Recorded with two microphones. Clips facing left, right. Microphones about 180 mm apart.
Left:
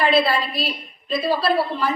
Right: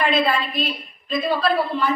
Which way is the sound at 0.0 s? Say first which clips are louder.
Left 2 dB; 35° left (ahead or behind).